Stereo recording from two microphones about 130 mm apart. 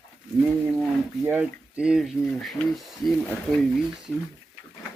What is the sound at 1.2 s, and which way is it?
Speech, 15° right (ahead or behind).